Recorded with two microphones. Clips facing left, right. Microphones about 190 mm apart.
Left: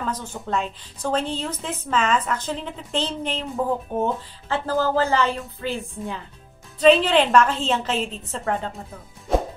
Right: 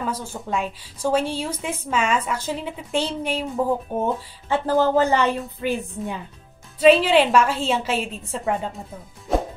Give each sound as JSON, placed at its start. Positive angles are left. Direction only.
{"t": 0.0, "sound": "a woman's voice", "side_deg": -10}
{"t": 9.3, "sound": "music", "side_deg": 0}